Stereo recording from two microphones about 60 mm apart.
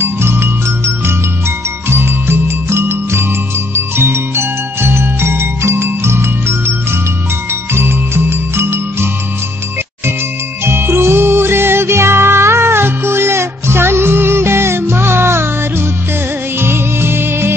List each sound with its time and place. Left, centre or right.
0.0 s music: right
10.6 s music: right